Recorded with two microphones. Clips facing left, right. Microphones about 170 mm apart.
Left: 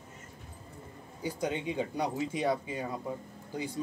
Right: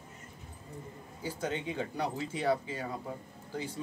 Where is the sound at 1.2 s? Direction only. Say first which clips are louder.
Left 2 dB; 15° left (ahead or behind).